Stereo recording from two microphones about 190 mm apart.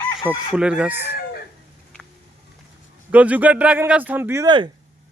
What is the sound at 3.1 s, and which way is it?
Speech, 10° right (ahead or behind).